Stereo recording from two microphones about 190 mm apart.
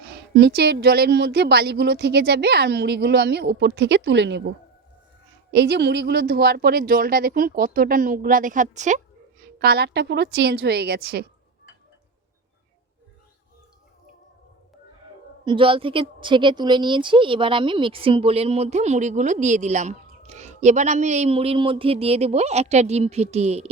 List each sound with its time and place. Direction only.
0.0 s speech: 60° right (ahead or behind); by 9.0 s 40° right (ahead or behind)
9.4 s speech: 55° right (ahead or behind)
15.4 s a woman's voice: 25° right (ahead or behind)